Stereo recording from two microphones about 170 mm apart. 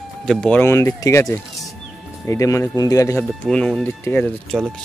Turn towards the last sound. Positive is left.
turn(degrees=0)  # may be behind; listen again after turning